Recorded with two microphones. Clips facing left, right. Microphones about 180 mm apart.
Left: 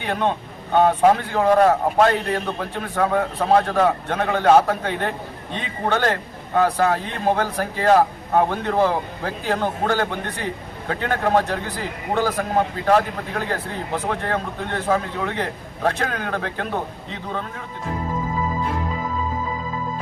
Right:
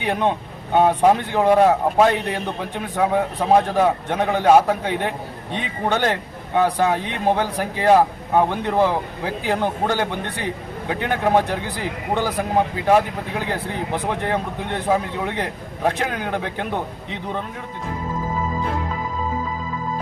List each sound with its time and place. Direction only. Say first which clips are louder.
0.0 s speech: right 2 dB; 15° right (ahead or behind)
2.0 s a man's voice: even; 15° right (ahead or behind)